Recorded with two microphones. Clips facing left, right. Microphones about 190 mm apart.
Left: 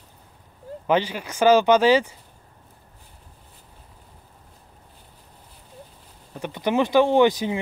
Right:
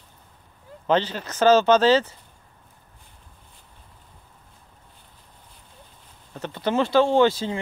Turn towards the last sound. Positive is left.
turn(degrees=15)  # may be behind; listen again after turning